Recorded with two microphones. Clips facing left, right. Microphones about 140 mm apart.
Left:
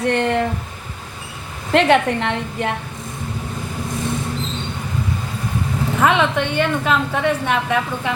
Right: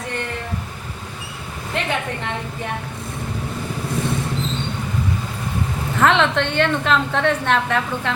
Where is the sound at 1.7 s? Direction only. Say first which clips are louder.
Left 10 dB; 80° left.